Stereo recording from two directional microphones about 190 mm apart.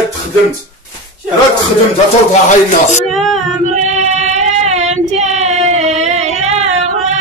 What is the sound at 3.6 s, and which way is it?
Child singing, 40° right (ahead or behind).